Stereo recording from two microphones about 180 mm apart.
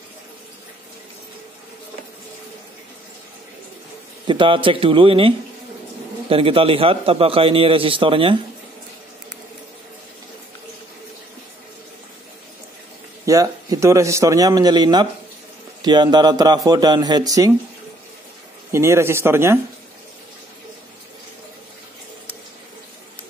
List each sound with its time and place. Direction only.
4.3 s a man's voice: 30° right (ahead or behind)
13.2 s a man's voice: 20° right (ahead or behind)
18.7 s speech: 15° right (ahead or behind)